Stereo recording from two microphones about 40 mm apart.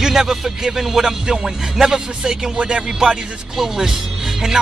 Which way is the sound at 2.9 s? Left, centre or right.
Centre.